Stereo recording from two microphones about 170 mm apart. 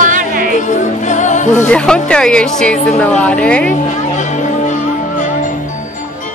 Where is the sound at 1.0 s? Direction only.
45° left (ahead or behind).